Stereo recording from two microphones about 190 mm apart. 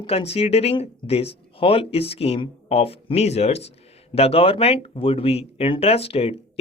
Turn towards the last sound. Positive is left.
turn(degrees=30)  # may be behind; listen again after turning